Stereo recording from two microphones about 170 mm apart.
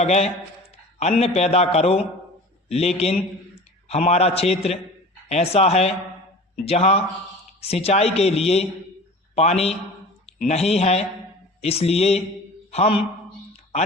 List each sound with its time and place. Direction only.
0.0 s a man's voice: 40° left (ahead or behind)